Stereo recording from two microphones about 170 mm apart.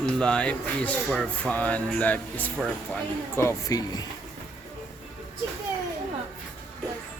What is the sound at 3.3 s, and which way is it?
Music, 20° left (ahead or behind).